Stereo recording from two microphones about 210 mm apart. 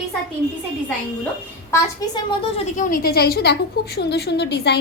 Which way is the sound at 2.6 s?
40° left (ahead or behind).